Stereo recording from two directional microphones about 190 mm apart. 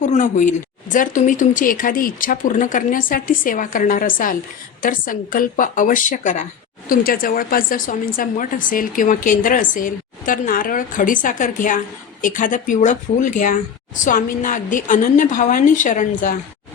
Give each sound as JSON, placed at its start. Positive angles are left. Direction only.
{"t": 0.0, "sound": "speech", "side_deg": 40}